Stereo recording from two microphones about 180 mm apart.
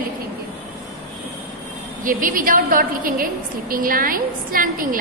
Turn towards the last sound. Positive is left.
turn(degrees=-50)  # may be behind; listen again after turning